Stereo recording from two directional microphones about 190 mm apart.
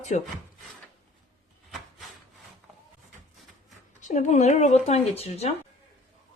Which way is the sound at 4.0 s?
40° left (ahead or behind).